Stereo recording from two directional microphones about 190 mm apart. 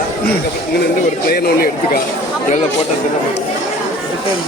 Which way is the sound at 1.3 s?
50° left (ahead or behind).